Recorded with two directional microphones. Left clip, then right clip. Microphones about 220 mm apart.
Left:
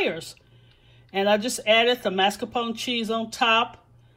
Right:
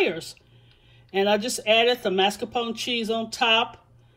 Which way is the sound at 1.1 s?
Centre (ahead or behind).